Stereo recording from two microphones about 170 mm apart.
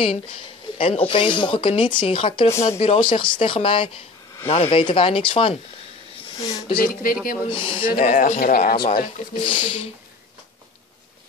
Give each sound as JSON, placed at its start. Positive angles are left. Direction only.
{"t": 0.7, "sound": "speech", "side_deg": 30}
{"t": 6.4, "sound": "speech", "side_deg": 20}
{"t": 6.8, "sound": "speech", "side_deg": 55}
{"t": 7.4, "sound": "speech", "side_deg": 30}
{"t": 7.8, "sound": "speech", "side_deg": 55}
{"t": 9.4, "sound": "speech", "side_deg": 30}